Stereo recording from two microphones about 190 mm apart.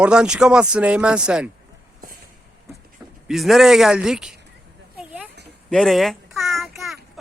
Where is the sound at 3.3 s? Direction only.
Centre (ahead or behind).